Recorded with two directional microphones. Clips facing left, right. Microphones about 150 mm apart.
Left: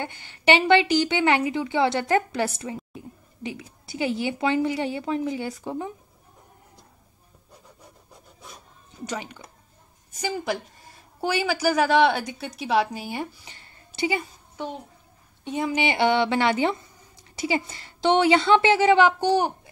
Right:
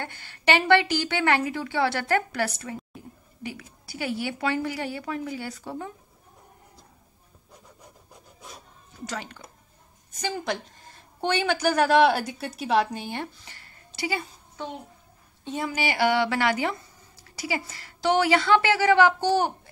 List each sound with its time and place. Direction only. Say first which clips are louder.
0.0 s a woman's voice: left 3 dB; 15° left (ahead or behind)
9.0 s a woman's voice: left 2 dB; 15° left (ahead or behind)
13.6 s a sound: left 6 dB; 20° left (ahead or behind)
15.4 s a woman's voice: left 4 dB; 20° left (ahead or behind)